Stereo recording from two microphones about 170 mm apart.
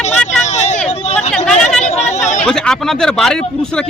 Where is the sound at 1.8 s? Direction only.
40° left (ahead or behind).